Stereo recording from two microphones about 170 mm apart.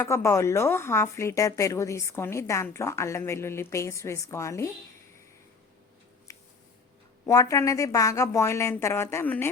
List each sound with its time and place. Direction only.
0.0 s a woman's voice: 15° left (ahead or behind)
6.3 s a sound: 20° left (ahead or behind)
7.3 s a woman's voice: 20° left (ahead or behind)